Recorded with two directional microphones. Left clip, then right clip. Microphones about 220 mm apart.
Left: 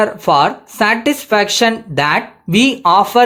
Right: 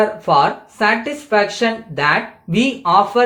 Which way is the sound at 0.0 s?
50° left (ahead or behind).